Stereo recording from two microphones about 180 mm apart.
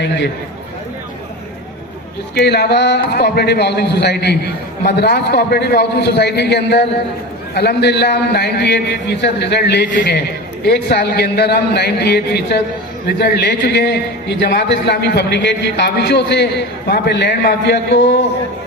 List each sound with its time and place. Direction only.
2.3 s a man's voice: 65° left (ahead or behind)
9.9 s a man's voice: 50° left (ahead or behind)
10.7 s a man's voice: 65° left (ahead or behind)